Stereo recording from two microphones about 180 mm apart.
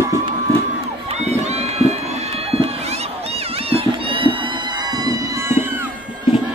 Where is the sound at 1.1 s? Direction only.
35° right (ahead or behind); by 5.8 s 10° right (ahead or behind).